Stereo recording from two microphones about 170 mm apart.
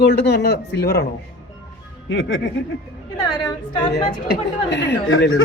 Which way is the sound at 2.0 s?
90° left.